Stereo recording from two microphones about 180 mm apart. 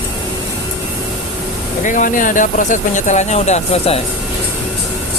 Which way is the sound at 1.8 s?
45° left (ahead or behind).